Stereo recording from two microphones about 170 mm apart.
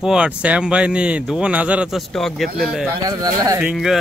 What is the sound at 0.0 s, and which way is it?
Speech, 5° right (ahead or behind).